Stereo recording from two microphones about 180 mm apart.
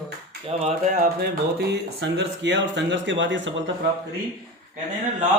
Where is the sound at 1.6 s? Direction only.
70° right (ahead or behind); by 3.6 s 90° right.